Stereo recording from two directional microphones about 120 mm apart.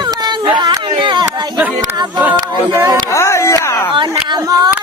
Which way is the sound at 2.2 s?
15° right (ahead or behind).